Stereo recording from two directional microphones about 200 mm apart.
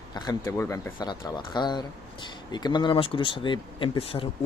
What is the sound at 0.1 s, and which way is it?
Speech, 20° left (ahead or behind).